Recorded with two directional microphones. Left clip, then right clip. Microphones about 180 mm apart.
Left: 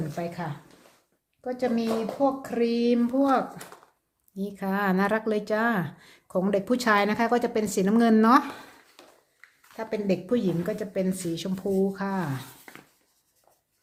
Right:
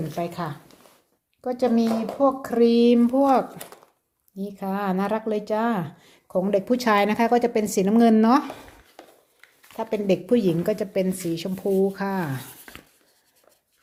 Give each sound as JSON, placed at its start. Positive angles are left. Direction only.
{"t": 0.2, "sound": "speech", "side_deg": -30}
{"t": 1.5, "sound": "speech", "side_deg": -30}
{"t": 4.4, "sound": "a woman's voice", "side_deg": 0}
{"t": 9.7, "sound": "speech", "side_deg": -25}